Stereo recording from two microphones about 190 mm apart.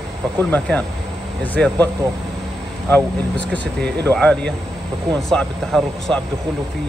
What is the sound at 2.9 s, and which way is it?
Speech, 5° left (ahead or behind).